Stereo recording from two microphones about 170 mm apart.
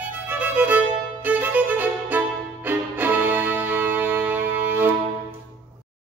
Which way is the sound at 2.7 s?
10° right (ahead or behind).